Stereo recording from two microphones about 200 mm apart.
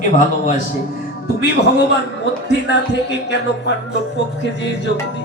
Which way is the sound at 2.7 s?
60° left (ahead or behind).